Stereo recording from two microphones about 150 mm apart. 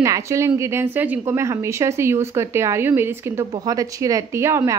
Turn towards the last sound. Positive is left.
turn(degrees=-20)  # may be behind; listen again after turning